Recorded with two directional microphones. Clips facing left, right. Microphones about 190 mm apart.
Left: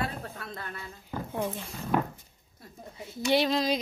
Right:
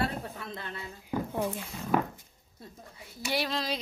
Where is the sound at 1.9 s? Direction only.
5° right (ahead or behind).